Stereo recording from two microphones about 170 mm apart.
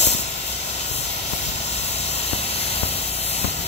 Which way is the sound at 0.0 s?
40° left (ahead or behind).